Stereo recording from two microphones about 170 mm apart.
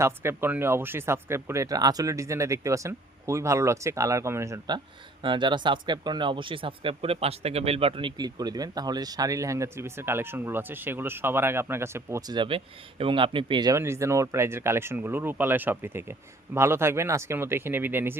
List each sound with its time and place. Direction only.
0.0 s speech: 15° right (ahead or behind)
12.4 s speech: 30° right (ahead or behind); by 18.2 s 10° right (ahead or behind)